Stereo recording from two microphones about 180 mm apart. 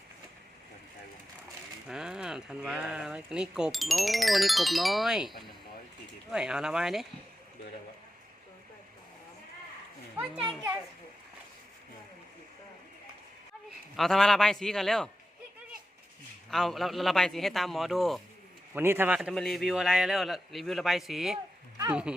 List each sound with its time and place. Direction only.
1.9 s speech: 5° right (ahead or behind)
6.3 s speech: 5° right (ahead or behind)
13.9 s speech: centre (ahead or behind)
16.5 s speech: centre (ahead or behind)
18.7 s speech: 10° right (ahead or behind)